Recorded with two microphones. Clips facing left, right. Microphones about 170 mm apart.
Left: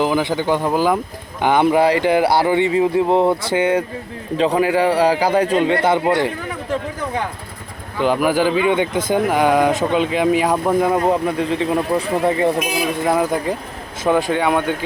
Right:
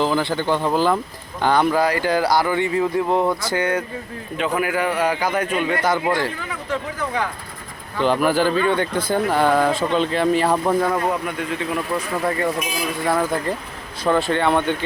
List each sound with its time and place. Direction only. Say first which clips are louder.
0.0 s a man's voice: left 2 dB; 15° left (ahead or behind)
7.9 s speech: left 1 dB; 10° left (ahead or behind)
11.0 s speech: left 6 dB; 30° left (ahead or behind); by 14.8 s 5° left (ahead or behind)